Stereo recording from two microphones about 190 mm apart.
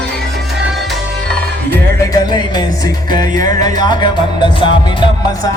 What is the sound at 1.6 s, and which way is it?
Music, 15° left (ahead or behind).